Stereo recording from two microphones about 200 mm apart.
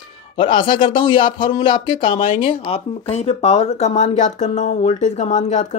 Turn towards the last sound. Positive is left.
turn(degrees=40)  # may be behind; listen again after turning